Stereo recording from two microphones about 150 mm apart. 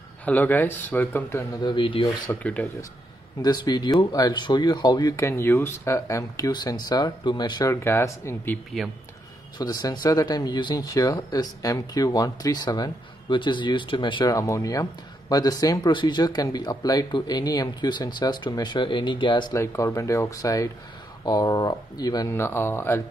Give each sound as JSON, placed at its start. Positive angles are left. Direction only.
{"t": 0.2, "sound": "speech", "side_deg": 10}
{"t": 1.6, "sound": "speech", "side_deg": 30}
{"t": 2.2, "sound": "speech", "side_deg": 10}
{"t": 3.4, "sound": "speech", "side_deg": 25}
{"t": 7.7, "sound": "speech", "side_deg": 15}
{"t": 9.6, "sound": "speech", "side_deg": 25}
{"t": 14.3, "sound": "speech", "side_deg": 20}
{"t": 19.5, "sound": "speech", "side_deg": 20}